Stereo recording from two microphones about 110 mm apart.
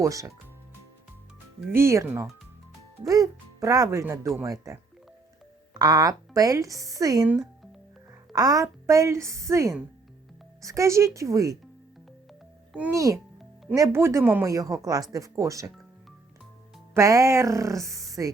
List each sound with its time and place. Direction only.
0.0 s a woman's voice: 30° right (ahead or behind)
1.7 s a woman's voice: 25° right (ahead or behind)
5.8 s a woman's voice: 35° right (ahead or behind)
7.3 s music: centre (ahead or behind)
8.3 s a woman's voice: 35° right (ahead or behind)
12.9 s a woman's voice: 30° right (ahead or behind)
16.9 s a woman's voice: 25° right (ahead or behind)